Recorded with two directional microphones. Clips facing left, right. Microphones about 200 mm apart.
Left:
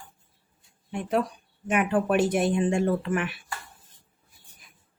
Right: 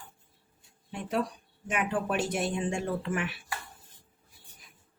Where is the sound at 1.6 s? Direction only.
60° left (ahead or behind).